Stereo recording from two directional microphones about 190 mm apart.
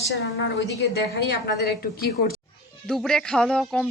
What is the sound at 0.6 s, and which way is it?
Speech, 60° left (ahead or behind).